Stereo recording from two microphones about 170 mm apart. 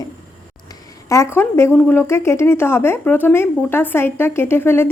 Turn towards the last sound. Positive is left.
turn(degrees=15)  # may be behind; listen again after turning